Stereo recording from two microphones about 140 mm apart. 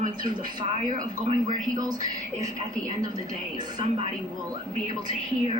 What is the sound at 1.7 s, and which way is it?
Speech, 25° right (ahead or behind).